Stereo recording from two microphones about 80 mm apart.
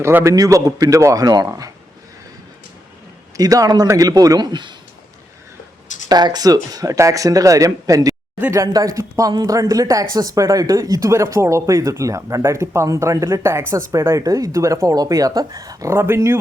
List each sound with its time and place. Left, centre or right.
0.0 s a man's voice: right
0.3 s speech: right
3.3 s speech: right
6.1 s speech: right
11.1 s speech: right
15.9 s speech: right